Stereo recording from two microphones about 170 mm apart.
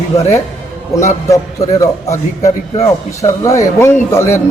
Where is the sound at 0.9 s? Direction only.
20° left (ahead or behind).